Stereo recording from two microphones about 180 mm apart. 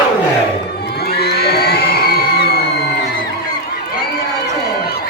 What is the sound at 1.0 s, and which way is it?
Crowd, 60° left (ahead or behind).